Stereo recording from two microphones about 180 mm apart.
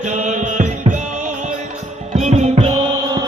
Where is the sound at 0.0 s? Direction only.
45° right (ahead or behind).